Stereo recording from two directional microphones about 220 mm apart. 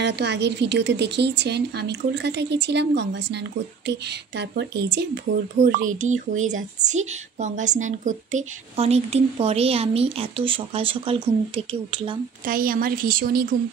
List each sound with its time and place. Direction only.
0.0 s a woman's voice: 50° right (ahead or behind)
5.9 s a woman's voice: 35° right (ahead or behind)
12.4 s a woman's voice: 40° right (ahead or behind)